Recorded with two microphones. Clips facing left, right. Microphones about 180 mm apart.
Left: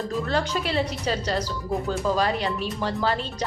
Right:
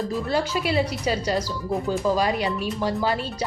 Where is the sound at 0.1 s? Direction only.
10° right (ahead or behind).